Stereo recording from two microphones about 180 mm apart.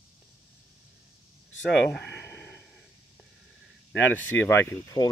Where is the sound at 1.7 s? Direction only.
Centre (ahead or behind).